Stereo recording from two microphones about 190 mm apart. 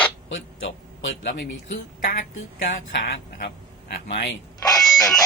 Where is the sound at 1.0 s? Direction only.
70° left (ahead or behind).